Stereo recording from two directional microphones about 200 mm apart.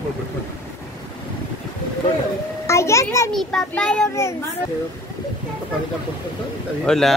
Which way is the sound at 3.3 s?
5° left (ahead or behind).